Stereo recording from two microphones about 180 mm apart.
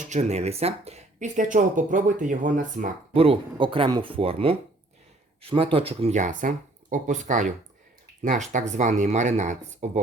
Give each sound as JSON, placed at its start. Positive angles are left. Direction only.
{"t": 0.0, "sound": "speech", "side_deg": -40}
{"t": 3.1, "sound": "speech", "side_deg": -30}